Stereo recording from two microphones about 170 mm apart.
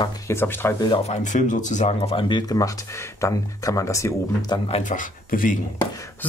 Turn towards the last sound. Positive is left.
turn(degrees=50)  # may be behind; listen again after turning